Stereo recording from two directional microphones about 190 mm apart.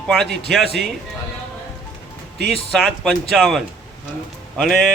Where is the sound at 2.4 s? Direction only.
Centre (ahead or behind).